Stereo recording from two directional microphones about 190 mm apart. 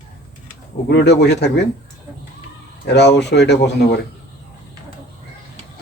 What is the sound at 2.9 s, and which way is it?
Speech, 60° left (ahead or behind).